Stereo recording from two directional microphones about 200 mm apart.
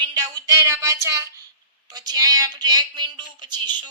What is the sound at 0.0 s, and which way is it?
A woman's voice, 20° right (ahead or behind).